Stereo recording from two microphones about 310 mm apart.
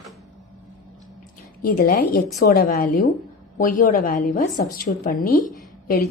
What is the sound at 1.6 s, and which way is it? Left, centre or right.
A woman's voice, left.